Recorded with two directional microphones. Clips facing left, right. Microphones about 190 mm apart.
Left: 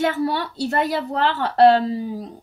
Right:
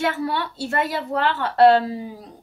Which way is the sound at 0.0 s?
40° left (ahead or behind).